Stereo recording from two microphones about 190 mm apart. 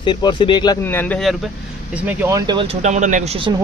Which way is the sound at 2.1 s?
10° right (ahead or behind).